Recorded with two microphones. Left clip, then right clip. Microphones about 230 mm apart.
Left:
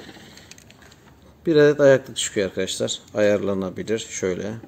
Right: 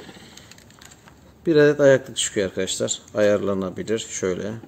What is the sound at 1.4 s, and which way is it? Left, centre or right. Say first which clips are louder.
Speech: even; centre.